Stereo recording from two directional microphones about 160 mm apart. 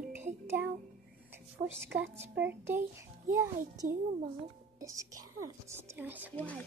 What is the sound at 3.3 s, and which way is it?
A child's voice, 20° right (ahead or behind).